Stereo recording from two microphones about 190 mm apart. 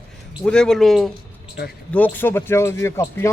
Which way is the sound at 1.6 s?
60° left (ahead or behind).